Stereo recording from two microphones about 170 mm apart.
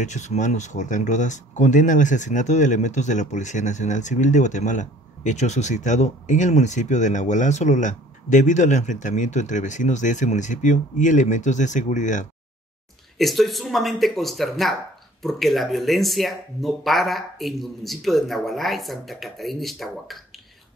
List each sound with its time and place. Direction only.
0.0 s speech: 45° left (ahead or behind)
13.2 s speech: centre (ahead or behind)